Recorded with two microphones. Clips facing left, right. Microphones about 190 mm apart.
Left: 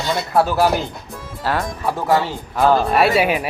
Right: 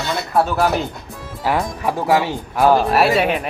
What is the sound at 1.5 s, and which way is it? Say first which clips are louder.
Speech: right 2 dB; 15° right (ahead or behind).